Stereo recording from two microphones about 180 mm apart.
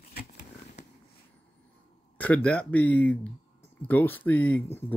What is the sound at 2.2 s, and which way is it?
Speech, 5° left (ahead or behind).